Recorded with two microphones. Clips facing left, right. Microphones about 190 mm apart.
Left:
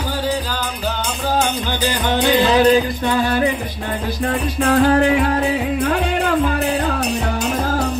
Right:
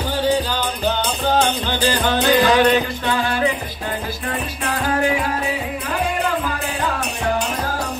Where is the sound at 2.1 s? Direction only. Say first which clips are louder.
Left 2 dB; 20° left (ahead or behind).